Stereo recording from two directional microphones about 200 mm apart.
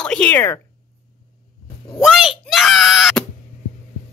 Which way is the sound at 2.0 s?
Centre (ahead or behind).